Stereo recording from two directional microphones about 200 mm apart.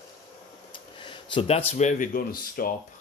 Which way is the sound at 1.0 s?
25° left (ahead or behind).